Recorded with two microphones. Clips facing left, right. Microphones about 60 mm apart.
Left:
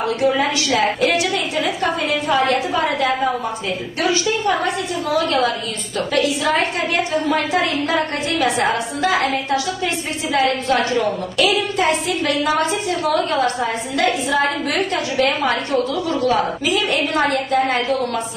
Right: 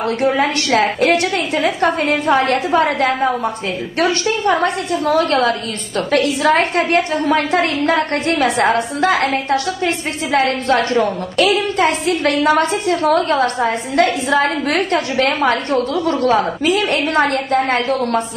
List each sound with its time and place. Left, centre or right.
0.0 s a woman's voice: right